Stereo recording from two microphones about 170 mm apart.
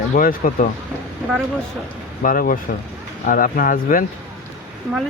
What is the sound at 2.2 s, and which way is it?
Speech, 55° left (ahead or behind).